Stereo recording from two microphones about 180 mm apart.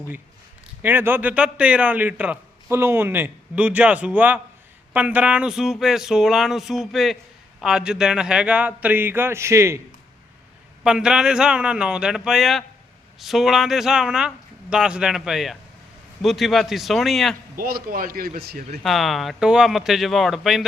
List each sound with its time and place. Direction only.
0.8 s a man's voice: 10° right (ahead or behind)
10.8 s speech: 5° right (ahead or behind)
17.6 s a man's voice: 55° right (ahead or behind)
18.8 s speech: centre (ahead or behind)